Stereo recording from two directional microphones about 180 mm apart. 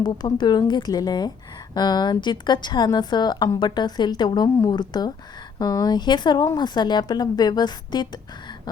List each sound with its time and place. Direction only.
0.0 s a woman's voice: 25° left (ahead or behind)